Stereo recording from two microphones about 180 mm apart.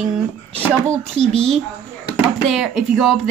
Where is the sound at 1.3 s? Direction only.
35° right (ahead or behind).